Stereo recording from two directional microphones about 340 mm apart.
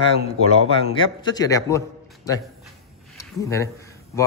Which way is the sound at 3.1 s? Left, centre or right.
Centre.